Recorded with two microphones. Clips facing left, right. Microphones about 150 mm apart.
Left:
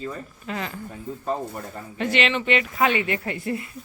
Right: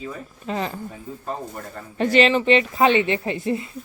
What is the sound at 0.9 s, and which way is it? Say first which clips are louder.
Speech: left 3 dB; centre (ahead or behind).